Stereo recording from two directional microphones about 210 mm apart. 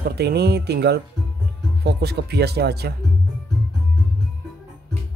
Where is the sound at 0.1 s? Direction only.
50° right (ahead or behind).